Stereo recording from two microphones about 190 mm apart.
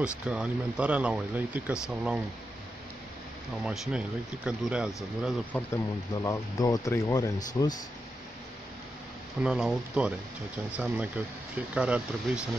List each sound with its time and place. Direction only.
0.0 s speech: 5° right (ahead or behind)
3.6 s speech: 5° right (ahead or behind)
5.5 s speech: 5° left (ahead or behind)
6.1 s speech: 20° left (ahead or behind)
9.4 s speech: centre (ahead or behind)